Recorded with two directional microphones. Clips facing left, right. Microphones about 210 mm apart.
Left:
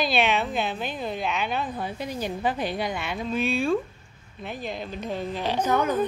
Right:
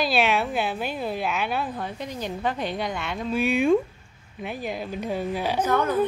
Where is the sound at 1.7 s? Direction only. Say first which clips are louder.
Left 1 dB; 5° left (ahead or behind).